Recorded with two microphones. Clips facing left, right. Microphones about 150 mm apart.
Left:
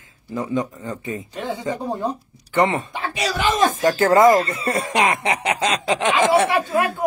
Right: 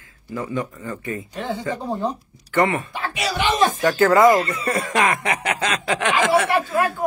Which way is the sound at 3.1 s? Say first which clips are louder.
Left 1 dB; 40° left (ahead or behind).